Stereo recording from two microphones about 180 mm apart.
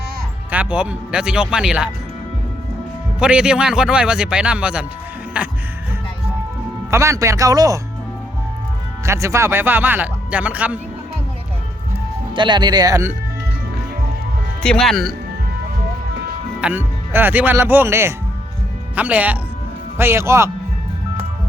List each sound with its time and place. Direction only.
0.5 s speech: 5° right (ahead or behind)
3.2 s speech: 5° right (ahead or behind)
6.9 s speech: 15° right (ahead or behind)
9.0 s speech: 15° right (ahead or behind)
12.3 s speech: 25° right (ahead or behind)
14.6 s speech: 5° left (ahead or behind)
16.6 s speech: 10° right (ahead or behind)